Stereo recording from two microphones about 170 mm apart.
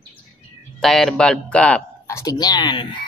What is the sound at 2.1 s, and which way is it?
Speech, 20° left (ahead or behind).